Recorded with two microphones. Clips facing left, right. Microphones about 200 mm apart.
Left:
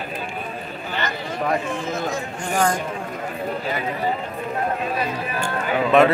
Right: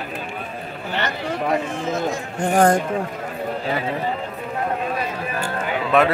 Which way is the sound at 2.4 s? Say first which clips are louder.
Right 6 dB; 60° right (ahead or behind).